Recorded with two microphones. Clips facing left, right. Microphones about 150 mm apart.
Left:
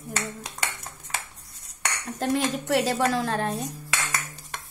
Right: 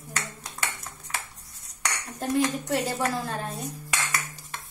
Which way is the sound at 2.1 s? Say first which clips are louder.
Even; 90° left.